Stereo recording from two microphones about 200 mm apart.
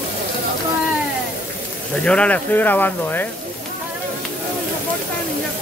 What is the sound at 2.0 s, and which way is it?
Speech, 5° left (ahead or behind).